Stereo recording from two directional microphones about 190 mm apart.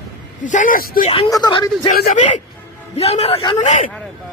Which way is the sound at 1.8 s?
40° left (ahead or behind).